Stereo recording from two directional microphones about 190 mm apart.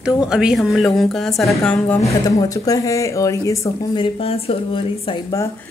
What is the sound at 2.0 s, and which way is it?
Speech, 15° left (ahead or behind).